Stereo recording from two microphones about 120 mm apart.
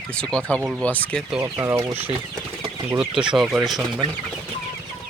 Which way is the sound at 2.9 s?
10° right (ahead or behind).